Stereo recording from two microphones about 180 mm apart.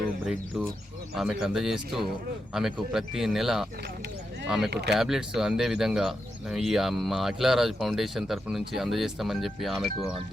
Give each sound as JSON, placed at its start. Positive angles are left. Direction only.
{"t": 1.1, "sound": "speech", "side_deg": 0}
{"t": 4.7, "sound": "speech", "side_deg": -65}
{"t": 4.9, "sound": "speech", "side_deg": 0}